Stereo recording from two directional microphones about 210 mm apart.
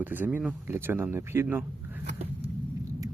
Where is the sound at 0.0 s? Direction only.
10° right (ahead or behind).